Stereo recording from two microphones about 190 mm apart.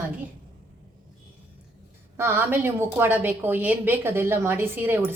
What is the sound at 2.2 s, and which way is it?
Speech, 10° right (ahead or behind).